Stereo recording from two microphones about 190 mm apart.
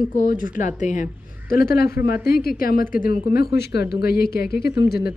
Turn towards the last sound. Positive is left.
turn(degrees=55)  # may be behind; listen again after turning